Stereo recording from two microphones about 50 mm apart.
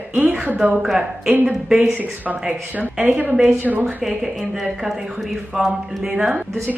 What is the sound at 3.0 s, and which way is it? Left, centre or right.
Speech, right.